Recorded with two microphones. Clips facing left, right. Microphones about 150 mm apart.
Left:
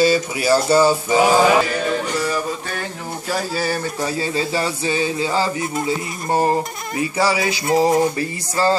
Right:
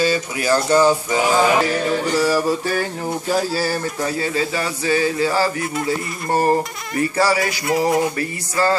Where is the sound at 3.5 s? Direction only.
5° right (ahead or behind).